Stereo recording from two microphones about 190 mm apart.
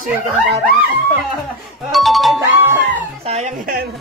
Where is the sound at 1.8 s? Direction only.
Centre (ahead or behind).